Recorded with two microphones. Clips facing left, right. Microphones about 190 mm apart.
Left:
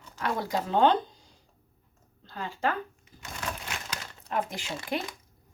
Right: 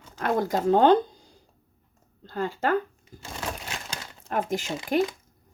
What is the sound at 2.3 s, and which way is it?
Speech, 45° right (ahead or behind).